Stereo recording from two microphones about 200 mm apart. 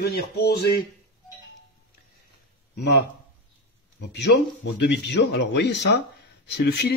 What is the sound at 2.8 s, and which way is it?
A man's voice, 60° left (ahead or behind).